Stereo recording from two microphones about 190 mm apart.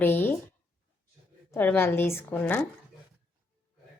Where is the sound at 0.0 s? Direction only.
10° left (ahead or behind).